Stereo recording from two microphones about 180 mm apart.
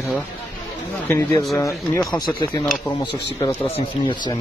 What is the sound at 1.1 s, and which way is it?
Speech, 10° left (ahead or behind).